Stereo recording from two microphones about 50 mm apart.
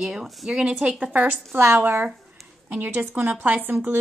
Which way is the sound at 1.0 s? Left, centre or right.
Right.